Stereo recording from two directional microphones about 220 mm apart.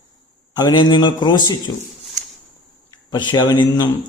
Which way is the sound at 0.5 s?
20° left (ahead or behind).